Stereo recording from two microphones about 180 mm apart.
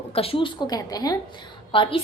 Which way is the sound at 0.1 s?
30° left (ahead or behind).